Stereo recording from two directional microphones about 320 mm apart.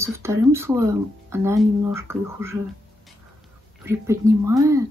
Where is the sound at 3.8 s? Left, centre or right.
Centre.